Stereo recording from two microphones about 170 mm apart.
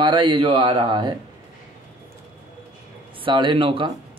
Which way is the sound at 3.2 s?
30° right (ahead or behind).